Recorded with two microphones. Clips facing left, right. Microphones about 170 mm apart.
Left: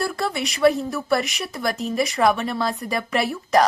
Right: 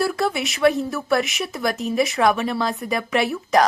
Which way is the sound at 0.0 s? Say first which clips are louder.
Right 3 dB; centre (ahead or behind).